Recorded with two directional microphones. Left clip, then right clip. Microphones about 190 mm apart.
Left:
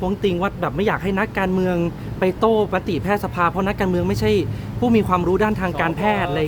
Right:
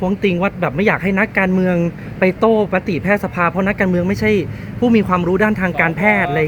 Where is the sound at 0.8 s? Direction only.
20° right (ahead or behind).